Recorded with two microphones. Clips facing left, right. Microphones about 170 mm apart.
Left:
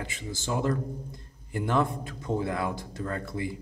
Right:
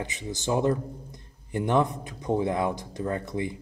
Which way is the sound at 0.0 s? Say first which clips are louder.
Right 4 dB; 20° right (ahead or behind).